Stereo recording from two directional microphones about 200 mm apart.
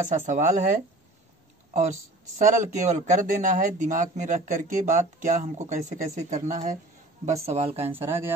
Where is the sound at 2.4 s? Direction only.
40° right (ahead or behind).